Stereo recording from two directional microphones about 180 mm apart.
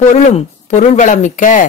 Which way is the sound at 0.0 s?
40° left (ahead or behind).